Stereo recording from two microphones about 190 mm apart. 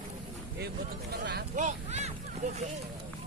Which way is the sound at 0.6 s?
55° right (ahead or behind).